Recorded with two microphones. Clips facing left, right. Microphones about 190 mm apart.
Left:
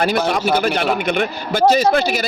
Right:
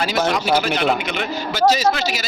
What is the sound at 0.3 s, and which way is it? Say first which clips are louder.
A man's voice: left 1 dB; 50° left (ahead or behind).